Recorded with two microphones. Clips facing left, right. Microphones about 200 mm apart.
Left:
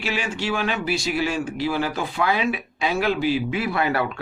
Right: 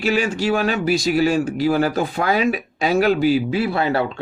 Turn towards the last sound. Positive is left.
turn(degrees=-25)  # may be behind; listen again after turning